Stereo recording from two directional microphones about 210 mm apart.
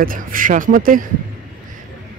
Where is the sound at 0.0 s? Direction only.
40° right (ahead or behind).